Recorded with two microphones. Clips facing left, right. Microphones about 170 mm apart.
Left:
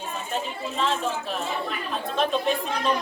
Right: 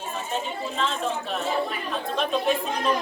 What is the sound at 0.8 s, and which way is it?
Speech, centre (ahead or behind).